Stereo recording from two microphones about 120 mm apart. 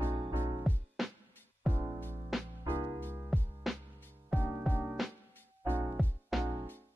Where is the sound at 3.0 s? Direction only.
20° right (ahead or behind).